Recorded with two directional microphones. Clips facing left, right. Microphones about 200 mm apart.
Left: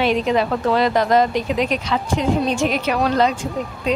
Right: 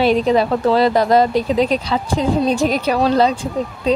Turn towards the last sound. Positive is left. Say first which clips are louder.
# right 4 dB
turn(degrees=-35)  # may be behind; listen again after turning